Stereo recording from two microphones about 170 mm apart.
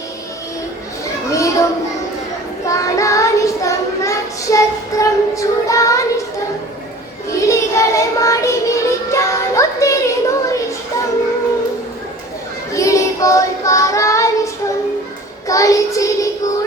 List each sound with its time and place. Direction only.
1.3 s a sound: 20° left (ahead or behind)
2.6 s child singing: 20° left (ahead or behind)
7.3 s music: 20° left (ahead or behind)
12.7 s child singing: 20° left (ahead or behind)